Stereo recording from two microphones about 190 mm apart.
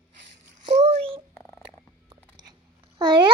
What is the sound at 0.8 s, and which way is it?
Cat, 35° right (ahead or behind).